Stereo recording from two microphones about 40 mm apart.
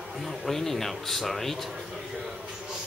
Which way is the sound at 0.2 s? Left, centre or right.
Centre.